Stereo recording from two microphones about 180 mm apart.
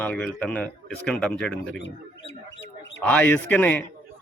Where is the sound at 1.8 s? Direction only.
80° left.